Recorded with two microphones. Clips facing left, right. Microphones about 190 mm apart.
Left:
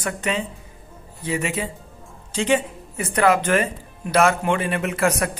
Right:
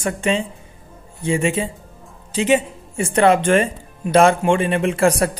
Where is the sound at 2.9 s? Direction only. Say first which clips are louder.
Right 4 dB; 30° right (ahead or behind).